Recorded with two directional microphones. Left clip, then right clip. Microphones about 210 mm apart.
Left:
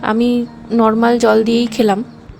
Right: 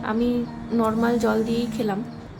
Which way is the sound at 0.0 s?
40° left (ahead or behind).